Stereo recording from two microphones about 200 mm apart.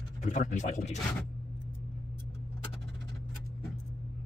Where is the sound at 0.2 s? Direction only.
40° left (ahead or behind).